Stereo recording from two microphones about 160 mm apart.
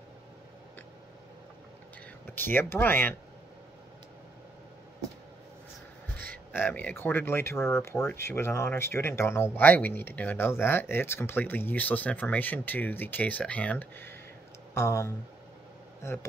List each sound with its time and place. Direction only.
2.2 s speech: 15° left (ahead or behind)
6.5 s speech: 10° left (ahead or behind)